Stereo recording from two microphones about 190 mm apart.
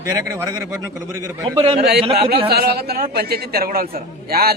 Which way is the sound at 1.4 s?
30° right (ahead or behind).